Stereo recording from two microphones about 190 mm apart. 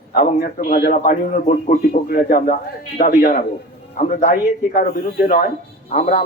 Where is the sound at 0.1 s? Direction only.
50° left (ahead or behind).